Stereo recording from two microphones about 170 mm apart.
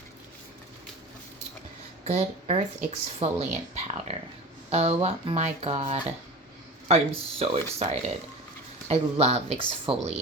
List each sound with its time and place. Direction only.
2.0 s speech: 40° right (ahead or behind)